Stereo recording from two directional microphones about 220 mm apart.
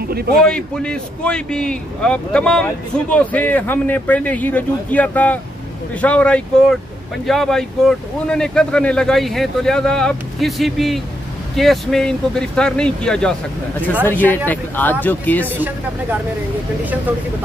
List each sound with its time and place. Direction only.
0.1 s speech: 45° right (ahead or behind)
0.4 s a man's voice: 5° left (ahead or behind)
15.4 s speech: 10° right (ahead or behind)